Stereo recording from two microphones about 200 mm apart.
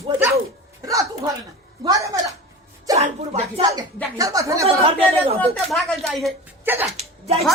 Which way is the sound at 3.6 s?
15° right (ahead or behind).